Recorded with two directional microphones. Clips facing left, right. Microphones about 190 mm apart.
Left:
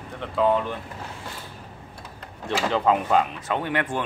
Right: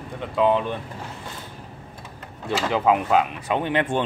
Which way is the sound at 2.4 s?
5° right (ahead or behind).